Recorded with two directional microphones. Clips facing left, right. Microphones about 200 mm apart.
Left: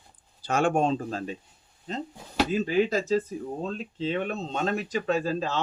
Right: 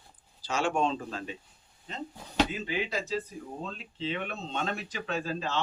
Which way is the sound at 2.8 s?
45° left (ahead or behind).